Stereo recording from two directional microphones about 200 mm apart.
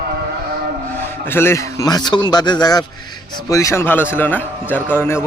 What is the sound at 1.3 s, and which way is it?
A man's voice, 10° left (ahead or behind).